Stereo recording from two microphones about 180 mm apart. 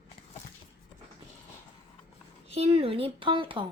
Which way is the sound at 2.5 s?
35° right (ahead or behind).